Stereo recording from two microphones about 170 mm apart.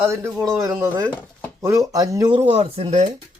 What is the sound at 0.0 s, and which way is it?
Speech, 15° right (ahead or behind).